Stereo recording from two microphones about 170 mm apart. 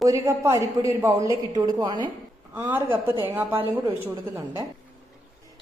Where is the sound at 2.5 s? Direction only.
10° right (ahead or behind).